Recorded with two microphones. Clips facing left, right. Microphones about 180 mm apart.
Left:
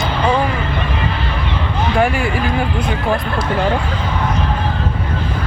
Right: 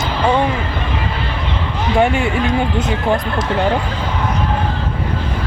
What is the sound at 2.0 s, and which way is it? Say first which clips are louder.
Speech: right 2 dB; 25° right (ahead or behind).